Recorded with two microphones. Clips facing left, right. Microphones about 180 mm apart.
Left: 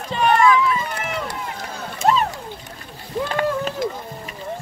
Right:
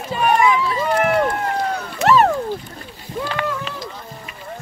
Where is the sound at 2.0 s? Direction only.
70° right (ahead or behind).